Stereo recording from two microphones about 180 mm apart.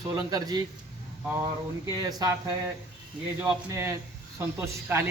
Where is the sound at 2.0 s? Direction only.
20° right (ahead or behind).